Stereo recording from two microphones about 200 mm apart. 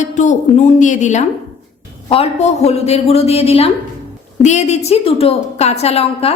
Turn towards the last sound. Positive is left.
turn(degrees=30)  # may be behind; listen again after turning